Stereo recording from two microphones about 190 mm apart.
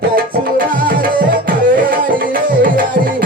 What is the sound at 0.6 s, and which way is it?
Music, 45° right (ahead or behind).